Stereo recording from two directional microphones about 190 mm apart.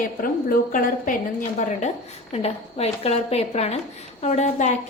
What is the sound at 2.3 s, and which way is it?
A woman's voice, 35° left (ahead or behind).